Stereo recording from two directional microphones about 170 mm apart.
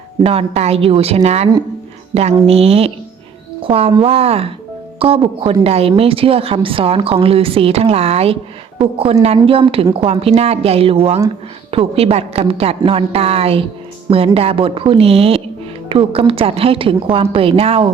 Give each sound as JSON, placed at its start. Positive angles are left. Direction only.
{"t": 0.2, "sound": "a woman's voice", "side_deg": -35}